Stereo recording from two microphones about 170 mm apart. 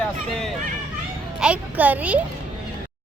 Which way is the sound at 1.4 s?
5° right (ahead or behind).